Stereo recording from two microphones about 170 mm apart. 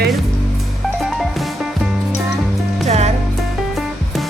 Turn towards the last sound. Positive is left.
turn(degrees=-40)  # may be behind; listen again after turning